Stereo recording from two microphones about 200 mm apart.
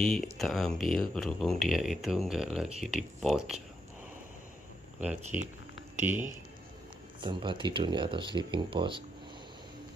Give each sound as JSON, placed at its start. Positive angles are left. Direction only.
{"t": 0.0, "sound": "speech", "side_deg": 0}
{"t": 5.0, "sound": "speech", "side_deg": -5}
{"t": 7.2, "sound": "speech", "side_deg": -25}